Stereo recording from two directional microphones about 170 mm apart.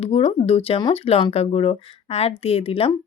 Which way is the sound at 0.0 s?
35° left (ahead or behind).